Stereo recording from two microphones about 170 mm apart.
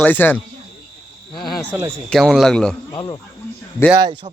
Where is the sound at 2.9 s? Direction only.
25° left (ahead or behind).